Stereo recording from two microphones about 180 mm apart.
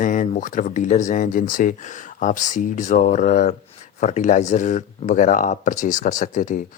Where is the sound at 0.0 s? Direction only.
45° left (ahead or behind).